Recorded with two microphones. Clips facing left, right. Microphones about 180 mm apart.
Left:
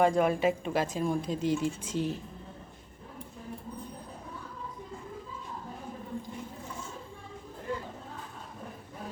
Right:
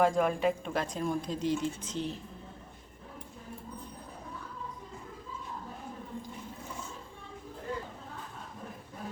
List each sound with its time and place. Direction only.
0.0 s speech: centre (ahead or behind)